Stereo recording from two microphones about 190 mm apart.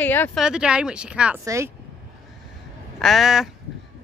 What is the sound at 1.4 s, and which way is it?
Speech, 15° right (ahead or behind).